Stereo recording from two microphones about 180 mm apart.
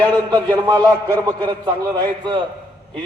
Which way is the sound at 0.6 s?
25° right (ahead or behind).